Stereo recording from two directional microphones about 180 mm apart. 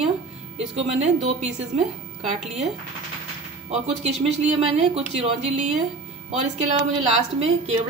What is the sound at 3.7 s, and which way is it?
Speech, 35° right (ahead or behind).